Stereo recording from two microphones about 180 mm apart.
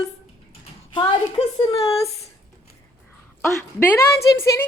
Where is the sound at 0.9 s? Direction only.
30° left (ahead or behind).